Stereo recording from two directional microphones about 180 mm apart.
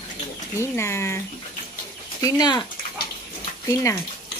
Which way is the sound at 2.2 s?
25° left (ahead or behind).